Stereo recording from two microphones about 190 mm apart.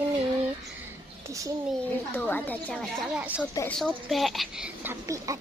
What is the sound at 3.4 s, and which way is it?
Speech, 5° left (ahead or behind).